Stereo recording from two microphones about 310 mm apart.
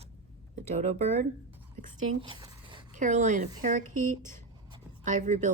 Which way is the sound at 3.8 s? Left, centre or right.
Right.